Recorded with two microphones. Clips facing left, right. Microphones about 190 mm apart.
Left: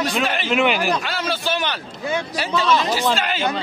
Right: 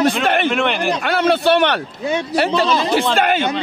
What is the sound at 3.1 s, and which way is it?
Speech, 55° right (ahead or behind).